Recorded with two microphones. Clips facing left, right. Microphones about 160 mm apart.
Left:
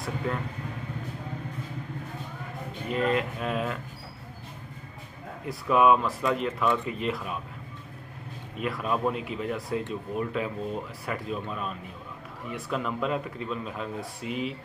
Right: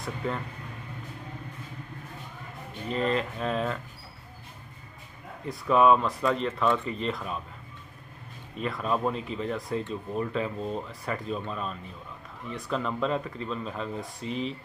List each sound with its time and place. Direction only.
0.2 s speech: 5° left (ahead or behind)
2.9 s speech: 5° left (ahead or behind)
5.5 s speech: 5° left (ahead or behind)
8.5 s speech: 5° left (ahead or behind)